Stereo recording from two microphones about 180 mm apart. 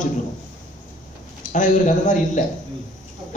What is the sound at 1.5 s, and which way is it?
Speech, 45° left (ahead or behind).